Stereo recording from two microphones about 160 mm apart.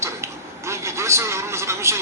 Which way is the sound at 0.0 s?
15° right (ahead or behind).